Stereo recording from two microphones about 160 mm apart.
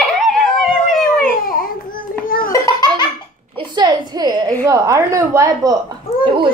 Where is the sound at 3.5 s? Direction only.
25° right (ahead or behind).